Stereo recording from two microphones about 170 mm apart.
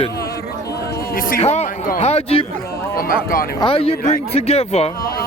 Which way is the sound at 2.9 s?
55° left (ahead or behind).